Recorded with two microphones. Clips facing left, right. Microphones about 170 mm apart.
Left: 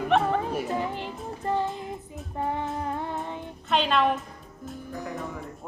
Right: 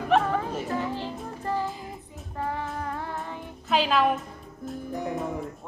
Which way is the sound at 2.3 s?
20° left (ahead or behind).